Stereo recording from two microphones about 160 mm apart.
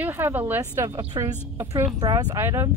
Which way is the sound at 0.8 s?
25° right (ahead or behind).